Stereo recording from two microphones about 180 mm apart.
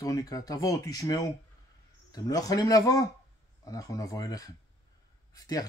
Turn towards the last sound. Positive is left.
turn(degrees=20)  # may be behind; listen again after turning